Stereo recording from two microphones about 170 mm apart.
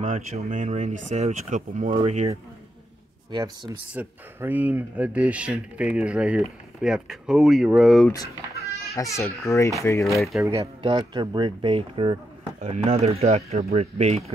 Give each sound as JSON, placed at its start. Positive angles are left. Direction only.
{"t": 0.0, "sound": "speech", "side_deg": -45}
{"t": 1.9, "sound": "speech", "side_deg": -30}
{"t": 3.3, "sound": "speech", "side_deg": -25}
{"t": 3.9, "sound": "speech", "side_deg": -10}
{"t": 8.9, "sound": "speech", "side_deg": 20}
{"t": 10.4, "sound": "speech", "side_deg": -20}